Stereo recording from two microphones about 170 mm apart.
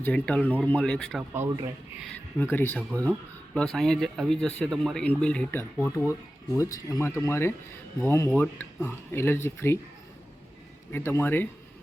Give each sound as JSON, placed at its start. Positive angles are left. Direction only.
{"t": 0.0, "sound": "speech", "side_deg": 10}
{"t": 1.3, "sound": "speech", "side_deg": -10}
{"t": 2.4, "sound": "speech", "side_deg": 10}
{"t": 10.9, "sound": "speech", "side_deg": 15}